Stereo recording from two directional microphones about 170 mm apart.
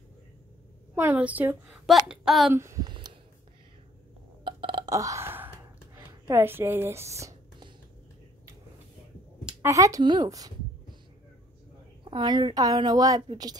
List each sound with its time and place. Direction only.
0.9 s a woman's voice: 10° right (ahead or behind)
2.5 s speech: 15° right (ahead or behind)
4.5 s burping: 30° right (ahead or behind)
9.5 s a woman's voice: 15° right (ahead or behind)
12.0 s a woman's voice: 30° right (ahead or behind)